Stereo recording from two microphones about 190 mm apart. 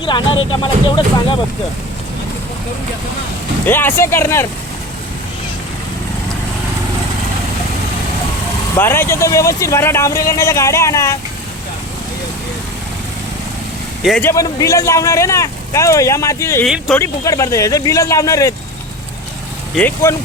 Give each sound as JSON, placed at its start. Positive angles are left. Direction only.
{"t": 0.0, "sound": "speech", "side_deg": 25}
{"t": 3.7, "sound": "speech", "side_deg": 10}
{"t": 8.8, "sound": "speech", "side_deg": 10}
{"t": 14.0, "sound": "speech", "side_deg": 0}
{"t": 14.3, "sound": "speech", "side_deg": 15}
{"t": 16.6, "sound": "speech", "side_deg": 0}
{"t": 17.0, "sound": "speech", "side_deg": 15}
{"t": 19.7, "sound": "speech", "side_deg": 10}